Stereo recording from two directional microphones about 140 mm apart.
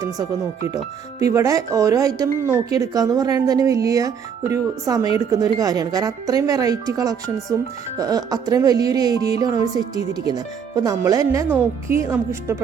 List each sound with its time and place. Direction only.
1.2 s speech: 25° right (ahead or behind)